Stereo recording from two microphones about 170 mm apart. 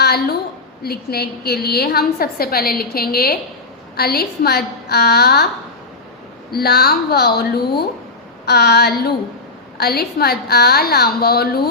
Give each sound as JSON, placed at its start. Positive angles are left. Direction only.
{"t": 0.0, "sound": "a woman's voice", "side_deg": 70}
{"t": 6.5, "sound": "a woman's voice", "side_deg": 65}